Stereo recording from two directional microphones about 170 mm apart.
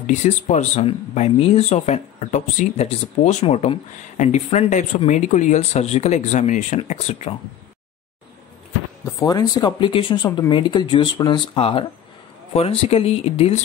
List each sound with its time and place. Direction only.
0.0 s speech: 45° left (ahead or behind)
9.2 s speech: 20° left (ahead or behind)